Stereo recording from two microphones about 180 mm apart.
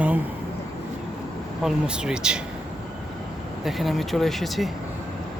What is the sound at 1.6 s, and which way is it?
Speech, 5° right (ahead or behind).